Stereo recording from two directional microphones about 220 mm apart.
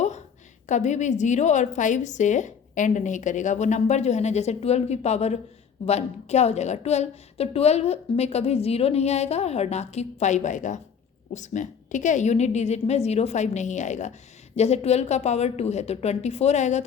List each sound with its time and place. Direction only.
0.7 s a woman's voice: 30° left (ahead or behind)